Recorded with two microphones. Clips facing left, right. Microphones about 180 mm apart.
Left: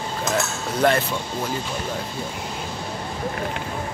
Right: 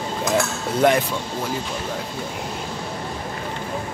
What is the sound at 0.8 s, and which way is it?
Speech, 15° right (ahead or behind).